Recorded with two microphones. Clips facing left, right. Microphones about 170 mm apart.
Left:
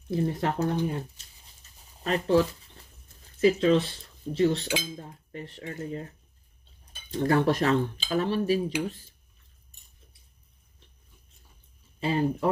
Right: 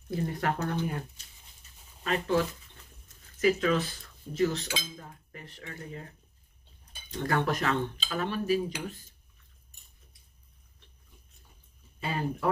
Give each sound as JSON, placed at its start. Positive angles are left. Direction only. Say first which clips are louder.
{"t": 0.1, "sound": "speech", "louder": "left 3 dB", "side_deg": 25}
{"t": 2.0, "sound": "speech", "louder": "left 4 dB", "side_deg": 35}
{"t": 7.1, "sound": "speech", "louder": "left 6 dB", "side_deg": 35}
{"t": 12.0, "sound": "speech", "louder": "left 7 dB", "side_deg": 25}